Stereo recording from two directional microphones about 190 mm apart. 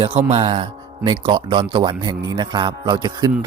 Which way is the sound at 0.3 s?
30° right (ahead or behind).